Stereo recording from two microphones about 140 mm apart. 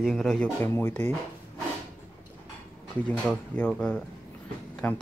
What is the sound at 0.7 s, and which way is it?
Speech, 15° left (ahead or behind).